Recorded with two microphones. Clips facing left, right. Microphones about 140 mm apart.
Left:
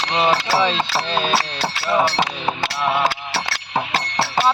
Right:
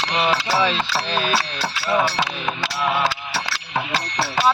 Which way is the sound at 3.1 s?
60° left (ahead or behind).